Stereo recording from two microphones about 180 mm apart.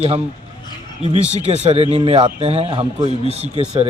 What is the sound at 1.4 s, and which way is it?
A man's voice, 35° right (ahead or behind).